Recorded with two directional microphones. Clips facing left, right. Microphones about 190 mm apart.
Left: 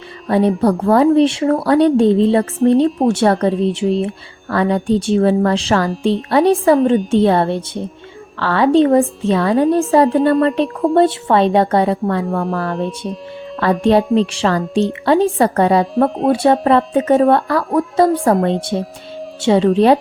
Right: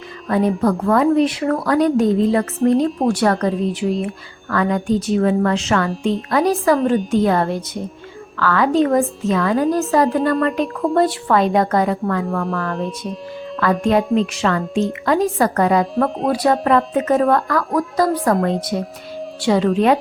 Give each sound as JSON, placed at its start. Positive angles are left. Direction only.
{"t": 0.3, "sound": "a woman's voice", "side_deg": 30}
{"t": 16.0, "sound": "speech", "side_deg": 0}
{"t": 16.3, "sound": "speech", "side_deg": 25}